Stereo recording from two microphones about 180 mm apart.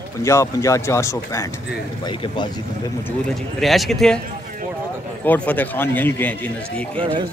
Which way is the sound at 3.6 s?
Centre (ahead or behind).